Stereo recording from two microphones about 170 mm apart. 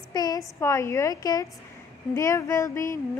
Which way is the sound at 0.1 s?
20° left (ahead or behind).